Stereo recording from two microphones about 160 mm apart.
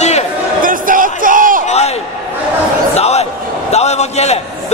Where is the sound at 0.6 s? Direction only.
60° right (ahead or behind).